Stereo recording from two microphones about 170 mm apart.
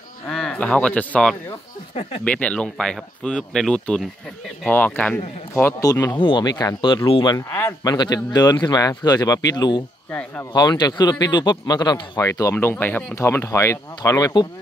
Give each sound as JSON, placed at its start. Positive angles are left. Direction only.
{"t": 0.3, "sound": "a man's voice", "side_deg": 5}
{"t": 7.3, "sound": "a man's voice", "side_deg": 15}